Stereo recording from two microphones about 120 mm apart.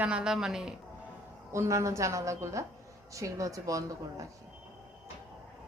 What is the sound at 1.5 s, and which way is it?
Speech, 25° right (ahead or behind).